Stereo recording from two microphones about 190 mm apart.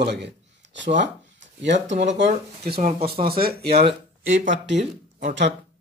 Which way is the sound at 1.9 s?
35° right (ahead or behind).